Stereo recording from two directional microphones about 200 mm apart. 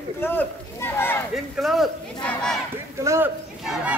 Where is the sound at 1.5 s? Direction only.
Centre (ahead or behind).